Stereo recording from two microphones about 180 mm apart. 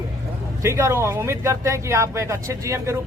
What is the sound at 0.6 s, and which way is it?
Speech, 15° right (ahead or behind).